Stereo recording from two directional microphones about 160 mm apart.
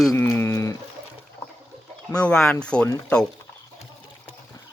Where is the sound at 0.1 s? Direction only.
15° left (ahead or behind).